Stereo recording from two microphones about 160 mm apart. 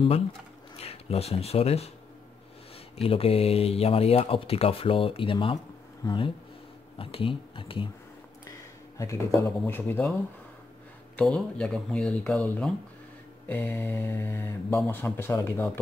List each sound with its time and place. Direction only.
0.7 s speech: 40° left (ahead or behind)
3.0 s speech: 35° left (ahead or behind)
8.9 s mantra: 20° left (ahead or behind)
11.1 s speech: 5° left (ahead or behind)
13.5 s mantra: 15° left (ahead or behind)